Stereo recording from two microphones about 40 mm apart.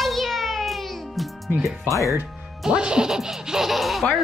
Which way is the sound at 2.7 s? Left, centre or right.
Right.